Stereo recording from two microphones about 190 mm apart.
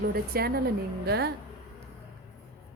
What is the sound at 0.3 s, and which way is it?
Speech, 55° right (ahead or behind).